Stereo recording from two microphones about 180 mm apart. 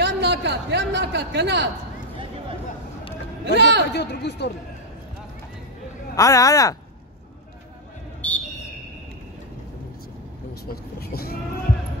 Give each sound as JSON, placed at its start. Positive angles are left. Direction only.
{"t": 0.0, "sound": "a man's voice", "side_deg": -70}
{"t": 3.4, "sound": "a man's voice", "side_deg": -70}
{"t": 3.9, "sound": "speech", "side_deg": 70}
{"t": 6.1, "sound": "speech", "side_deg": 20}
{"t": 8.2, "sound": "a sound", "side_deg": 10}
{"t": 10.7, "sound": "speech", "side_deg": 55}